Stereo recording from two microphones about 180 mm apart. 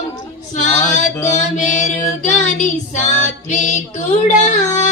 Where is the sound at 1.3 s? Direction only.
40° left (ahead or behind).